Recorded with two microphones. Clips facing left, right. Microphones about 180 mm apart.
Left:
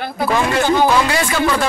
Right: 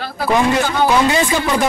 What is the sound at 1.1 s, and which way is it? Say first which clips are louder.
Speech: right 1 dB; 20° right (ahead or behind).